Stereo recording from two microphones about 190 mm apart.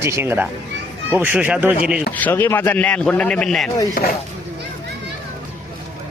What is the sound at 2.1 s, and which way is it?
A man's voice, 10° left (ahead or behind).